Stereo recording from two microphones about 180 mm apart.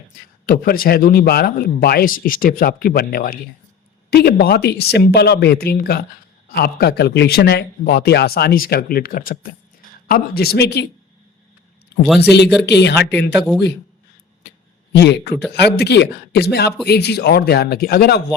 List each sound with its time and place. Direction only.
0.4 s speech: 55° left (ahead or behind)
12.0 s speech: centre (ahead or behind)
12.3 s speech: 70° left (ahead or behind)
14.9 s speech: 70° left (ahead or behind)